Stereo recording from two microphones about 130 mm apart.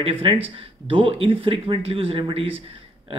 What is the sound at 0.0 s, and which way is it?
Speech, 45° right (ahead or behind).